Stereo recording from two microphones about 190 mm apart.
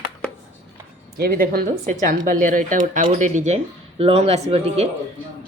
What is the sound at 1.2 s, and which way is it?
Speech, 55° right (ahead or behind).